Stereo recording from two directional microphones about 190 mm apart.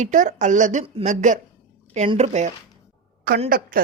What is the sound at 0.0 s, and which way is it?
Speech, 40° right (ahead or behind).